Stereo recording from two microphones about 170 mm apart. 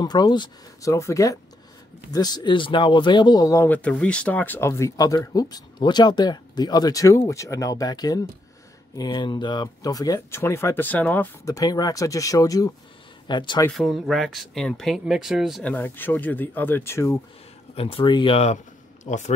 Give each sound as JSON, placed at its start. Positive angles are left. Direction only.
{"t": 0.0, "sound": "speech", "side_deg": 25}
{"t": 11.5, "sound": "speech", "side_deg": 20}
{"t": 13.7, "sound": "speech", "side_deg": 0}
{"t": 15.7, "sound": "speech", "side_deg": 10}
{"t": 17.7, "sound": "speech", "side_deg": 30}